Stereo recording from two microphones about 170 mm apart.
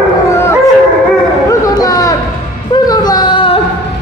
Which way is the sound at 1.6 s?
20° left (ahead or behind).